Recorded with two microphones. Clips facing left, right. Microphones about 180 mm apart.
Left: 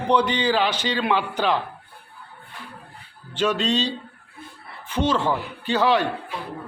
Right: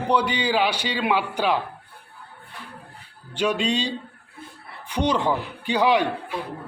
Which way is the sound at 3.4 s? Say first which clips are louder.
Left 1 dB; 10° right (ahead or behind).